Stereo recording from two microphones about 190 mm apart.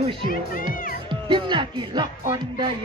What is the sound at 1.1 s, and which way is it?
Speech, 25° right (ahead or behind).